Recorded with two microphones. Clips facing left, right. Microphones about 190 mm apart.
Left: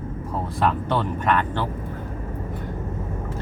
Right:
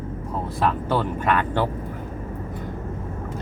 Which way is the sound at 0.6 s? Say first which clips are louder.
Even; 5° right (ahead or behind).